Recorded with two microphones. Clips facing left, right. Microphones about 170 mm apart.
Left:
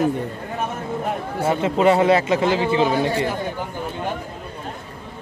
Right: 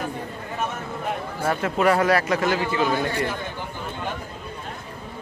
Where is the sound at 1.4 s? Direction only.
20° left (ahead or behind).